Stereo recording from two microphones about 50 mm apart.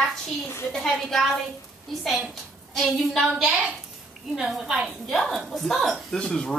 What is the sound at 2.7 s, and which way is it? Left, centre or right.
A woman's voice, centre.